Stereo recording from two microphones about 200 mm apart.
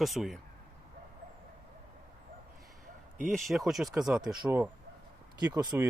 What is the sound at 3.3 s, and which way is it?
Speech, centre (ahead or behind).